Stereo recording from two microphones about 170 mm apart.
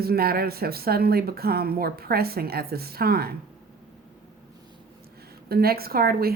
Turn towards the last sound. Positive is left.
turn(degrees=-65)  # may be behind; listen again after turning